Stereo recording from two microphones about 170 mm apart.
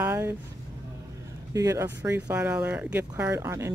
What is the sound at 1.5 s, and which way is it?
Speech, 20° right (ahead or behind).